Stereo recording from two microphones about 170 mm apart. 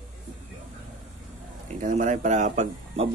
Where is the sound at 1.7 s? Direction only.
45° right (ahead or behind).